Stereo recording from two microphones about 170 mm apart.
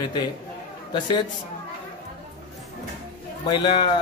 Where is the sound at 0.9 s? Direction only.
25° left (ahead or behind).